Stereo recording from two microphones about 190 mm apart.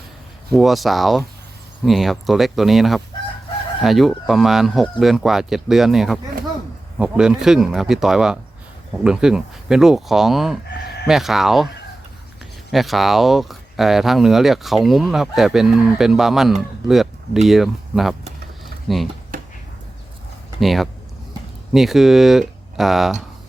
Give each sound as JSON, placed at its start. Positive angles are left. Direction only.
{"t": 0.5, "sound": "speech", "side_deg": 0}
{"t": 12.7, "sound": "speech", "side_deg": 0}
{"t": 19.3, "sound": "a sound", "side_deg": -45}
{"t": 20.6, "sound": "speech", "side_deg": 0}